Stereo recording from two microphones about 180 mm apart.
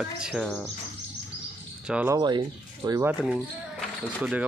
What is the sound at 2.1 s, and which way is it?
Speech, 25° right (ahead or behind).